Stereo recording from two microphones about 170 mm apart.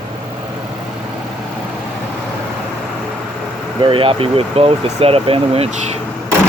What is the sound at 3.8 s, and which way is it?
Speech, 30° right (ahead or behind).